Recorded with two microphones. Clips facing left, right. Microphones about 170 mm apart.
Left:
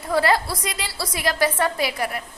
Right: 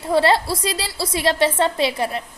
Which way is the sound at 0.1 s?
25° right (ahead or behind).